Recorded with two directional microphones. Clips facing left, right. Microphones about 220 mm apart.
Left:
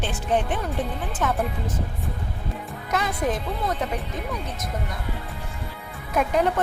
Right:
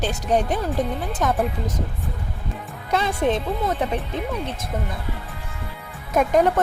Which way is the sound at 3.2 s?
30° right (ahead or behind).